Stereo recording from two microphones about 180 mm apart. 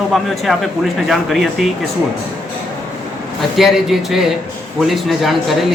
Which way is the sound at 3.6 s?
Centre (ahead or behind).